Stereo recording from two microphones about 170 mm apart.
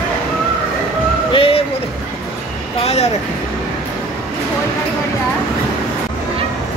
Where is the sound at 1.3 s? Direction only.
35° left (ahead or behind).